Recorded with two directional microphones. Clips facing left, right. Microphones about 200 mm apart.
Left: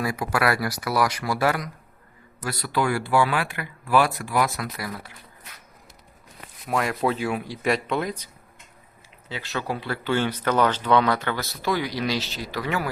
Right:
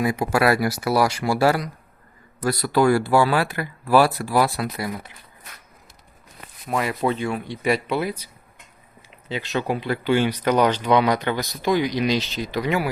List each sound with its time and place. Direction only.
0.0 s speech: 25° right (ahead or behind)
6.7 s speech: centre (ahead or behind)
9.3 s speech: 20° right (ahead or behind)